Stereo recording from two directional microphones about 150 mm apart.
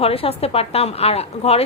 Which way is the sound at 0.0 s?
40° left (ahead or behind).